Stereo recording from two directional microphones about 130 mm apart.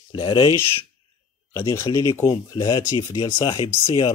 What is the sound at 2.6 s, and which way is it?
Speech, 35° left (ahead or behind).